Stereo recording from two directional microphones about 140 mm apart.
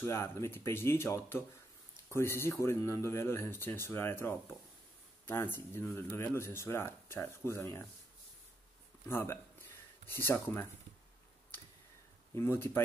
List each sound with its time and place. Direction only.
0.0 s speech: 20° left (ahead or behind)
9.1 s speech: 15° left (ahead or behind)
12.4 s speech: 15° left (ahead or behind)